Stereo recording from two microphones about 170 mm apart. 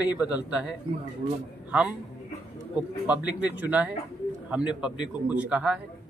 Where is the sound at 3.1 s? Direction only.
5° right (ahead or behind).